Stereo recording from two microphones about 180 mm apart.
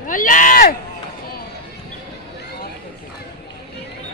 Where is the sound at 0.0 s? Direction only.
50° left (ahead or behind).